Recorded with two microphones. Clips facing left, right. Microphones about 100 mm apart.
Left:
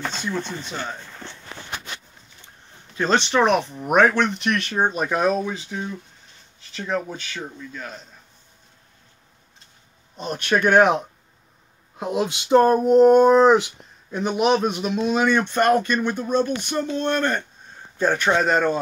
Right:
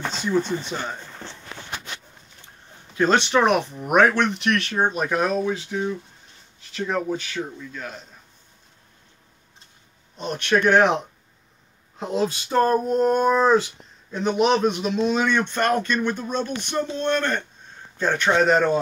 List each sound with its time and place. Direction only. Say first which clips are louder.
0.1 s speech: right 5 dB; 5° right (ahead or behind)
2.9 s speech: right 1 dB; 5° right (ahead or behind)
10.2 s speech: even; 5° left (ahead or behind)
12.0 s a sound: even; 10° left (ahead or behind)
14.1 s speech: even; 10° left (ahead or behind)